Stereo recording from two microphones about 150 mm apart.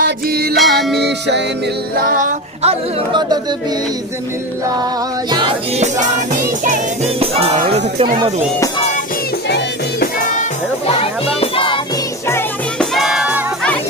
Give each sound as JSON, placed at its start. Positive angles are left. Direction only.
{"t": 0.0, "sound": "music", "side_deg": -90}
{"t": 0.6, "sound": "music", "side_deg": 0}
{"t": 2.0, "sound": "music", "side_deg": -60}
{"t": 2.6, "sound": "speech", "side_deg": -30}
{"t": 5.8, "sound": "music", "side_deg": -55}
{"t": 7.2, "sound": "music", "side_deg": -45}
{"t": 9.5, "sound": "music", "side_deg": 90}
{"t": 10.9, "sound": "music", "side_deg": 40}
{"t": 12.7, "sound": "music", "side_deg": 0}